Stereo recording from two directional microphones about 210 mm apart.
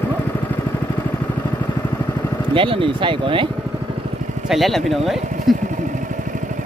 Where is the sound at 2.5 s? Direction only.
25° right (ahead or behind).